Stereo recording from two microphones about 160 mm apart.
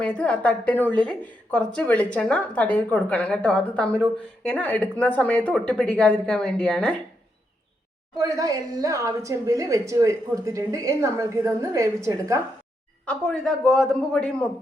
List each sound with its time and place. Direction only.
0.0 s a woman's voice: 10° left (ahead or behind)
8.1 s speech: 20° right (ahead or behind)
13.1 s a man's voice: 5° left (ahead or behind)